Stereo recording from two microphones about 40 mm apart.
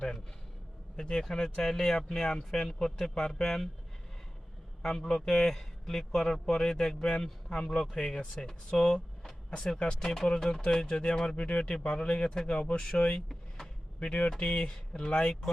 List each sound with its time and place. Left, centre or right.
0.9 s a man's voice: left
4.8 s a man's voice: centre